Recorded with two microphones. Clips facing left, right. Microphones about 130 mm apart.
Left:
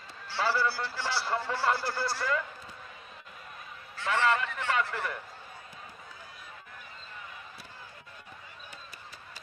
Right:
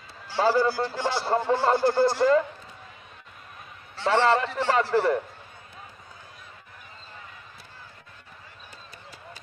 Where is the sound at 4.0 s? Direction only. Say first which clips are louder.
Right 6 dB; 30° right (ahead or behind).